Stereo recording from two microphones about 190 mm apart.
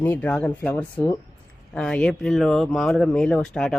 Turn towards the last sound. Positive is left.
turn(degrees=5)  # may be behind; listen again after turning